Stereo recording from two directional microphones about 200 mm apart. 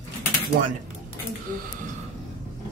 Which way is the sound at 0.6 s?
50° right (ahead or behind).